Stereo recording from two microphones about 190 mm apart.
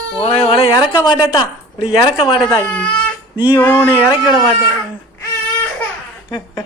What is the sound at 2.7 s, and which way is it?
Speech, 10° left (ahead or behind).